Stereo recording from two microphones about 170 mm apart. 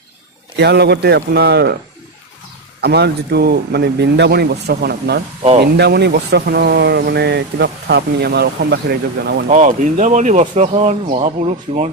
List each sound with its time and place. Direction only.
0.5 s speech: 80° right
2.8 s speech: 75° right (ahead or behind)
5.4 s speech: 35° right (ahead or behind)
5.7 s speech: 80° right
9.5 s speech: 45° right (ahead or behind)